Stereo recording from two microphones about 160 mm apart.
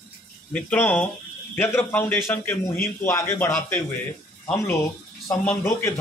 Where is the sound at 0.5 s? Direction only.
10° left (ahead or behind).